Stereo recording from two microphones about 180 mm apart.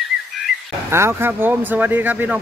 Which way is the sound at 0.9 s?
15° right (ahead or behind).